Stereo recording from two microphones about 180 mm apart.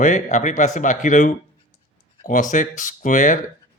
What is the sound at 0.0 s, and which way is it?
Speech, 45° left (ahead or behind).